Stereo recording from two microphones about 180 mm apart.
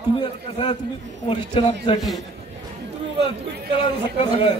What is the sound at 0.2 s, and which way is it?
A man's voice, 25° left (ahead or behind).